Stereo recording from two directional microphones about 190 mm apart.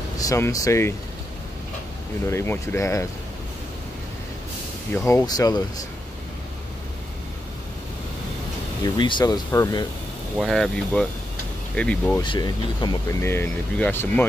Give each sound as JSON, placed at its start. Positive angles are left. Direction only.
{"t": 0.2, "sound": "speech", "side_deg": 20}
{"t": 2.2, "sound": "speech", "side_deg": 15}
{"t": 4.9, "sound": "speech", "side_deg": 15}
{"t": 8.8, "sound": "speech", "side_deg": 25}
{"t": 10.3, "sound": "speech", "side_deg": 0}
{"t": 12.2, "sound": "speech", "side_deg": 25}